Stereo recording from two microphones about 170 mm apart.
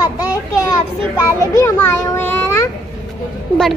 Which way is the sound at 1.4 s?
15° left (ahead or behind).